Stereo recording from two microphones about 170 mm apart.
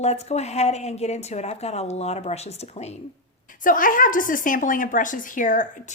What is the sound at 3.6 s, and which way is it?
Speech, 50° left (ahead or behind).